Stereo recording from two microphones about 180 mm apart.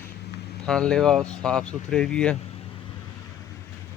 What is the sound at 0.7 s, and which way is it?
A man's voice, 5° left (ahead or behind).